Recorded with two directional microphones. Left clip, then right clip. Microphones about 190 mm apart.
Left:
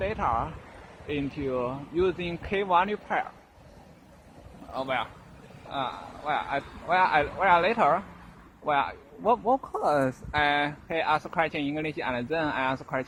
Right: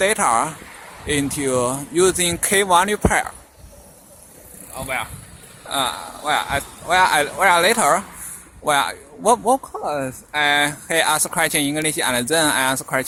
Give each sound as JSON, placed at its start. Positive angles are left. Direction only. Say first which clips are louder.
{"t": 0.0, "sound": "speech", "louder": "right 10 dB", "side_deg": -25}
{"t": 5.7, "sound": "speech", "louder": "right 10 dB", "side_deg": -15}
{"t": 9.7, "sound": "speech", "louder": "right 1 dB", "side_deg": 5}
{"t": 10.4, "sound": "speech", "louder": "right 9 dB", "side_deg": -10}